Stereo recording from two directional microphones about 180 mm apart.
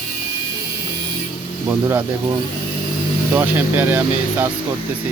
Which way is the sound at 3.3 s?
10° right (ahead or behind).